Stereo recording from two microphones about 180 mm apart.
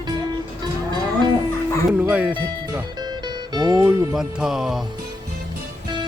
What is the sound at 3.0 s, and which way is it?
Music, 25° right (ahead or behind).